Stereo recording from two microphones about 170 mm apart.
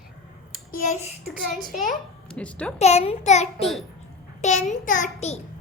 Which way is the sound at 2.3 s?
5° left (ahead or behind).